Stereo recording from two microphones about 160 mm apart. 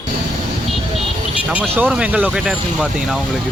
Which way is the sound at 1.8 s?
10° right (ahead or behind).